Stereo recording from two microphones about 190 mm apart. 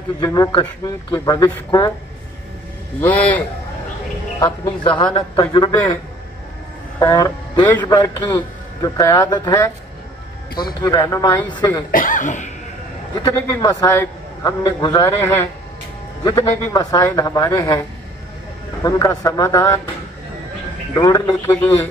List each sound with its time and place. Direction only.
0.2 s speech: 20° left (ahead or behind)
3.0 s speech: 10° left (ahead or behind)
4.5 s speech: 25° left (ahead or behind)
7.0 s speech: 20° left (ahead or behind)
10.8 s speech: 20° left (ahead or behind)
11.9 s speech: 45° left (ahead or behind)
13.2 s speech: 20° left (ahead or behind)
20.9 s speech: 20° left (ahead or behind)